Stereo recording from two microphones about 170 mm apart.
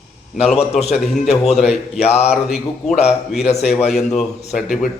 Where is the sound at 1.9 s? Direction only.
40° left (ahead or behind).